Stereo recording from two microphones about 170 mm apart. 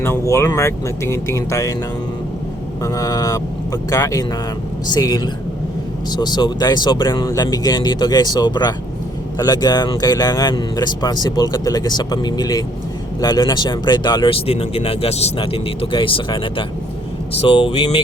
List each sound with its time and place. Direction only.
0.0 s speech: 15° left (ahead or behind)
2.8 s speech: 20° left (ahead or behind)